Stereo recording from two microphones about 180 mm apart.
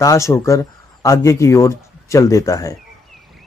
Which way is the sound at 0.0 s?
15° left (ahead or behind).